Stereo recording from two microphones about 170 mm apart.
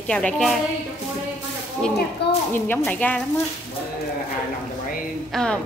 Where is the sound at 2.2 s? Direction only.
90° left.